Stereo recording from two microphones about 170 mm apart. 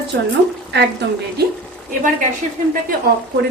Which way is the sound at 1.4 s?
70° right (ahead or behind).